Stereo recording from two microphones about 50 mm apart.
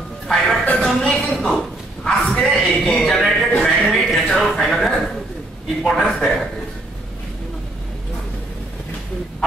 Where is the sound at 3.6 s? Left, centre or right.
Centre.